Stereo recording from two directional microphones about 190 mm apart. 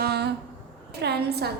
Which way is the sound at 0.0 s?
60° right (ahead or behind).